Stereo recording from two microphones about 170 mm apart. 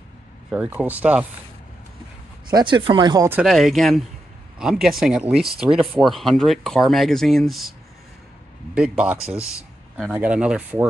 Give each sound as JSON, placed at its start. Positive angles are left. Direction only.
{"t": 0.5, "sound": "speech", "side_deg": -10}
{"t": 2.5, "sound": "speech", "side_deg": -30}
{"t": 3.3, "sound": "speech", "side_deg": -5}
{"t": 8.7, "sound": "speech", "side_deg": -5}